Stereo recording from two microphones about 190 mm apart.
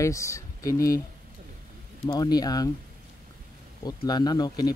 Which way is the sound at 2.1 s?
20° left (ahead or behind).